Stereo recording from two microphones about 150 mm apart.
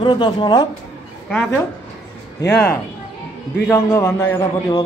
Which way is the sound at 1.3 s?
10° left (ahead or behind).